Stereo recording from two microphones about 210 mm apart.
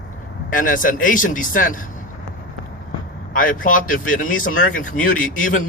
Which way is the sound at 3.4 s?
40° left (ahead or behind).